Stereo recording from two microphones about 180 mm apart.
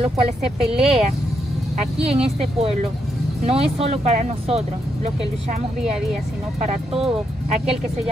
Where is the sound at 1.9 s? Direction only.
35° right (ahead or behind).